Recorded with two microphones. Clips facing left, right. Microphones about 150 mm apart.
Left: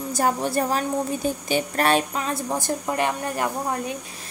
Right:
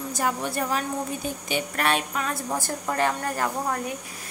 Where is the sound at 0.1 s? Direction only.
35° left (ahead or behind).